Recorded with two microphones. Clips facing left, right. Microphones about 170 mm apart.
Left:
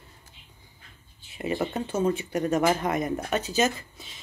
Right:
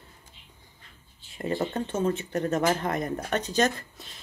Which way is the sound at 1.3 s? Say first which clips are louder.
Even; 10° left (ahead or behind).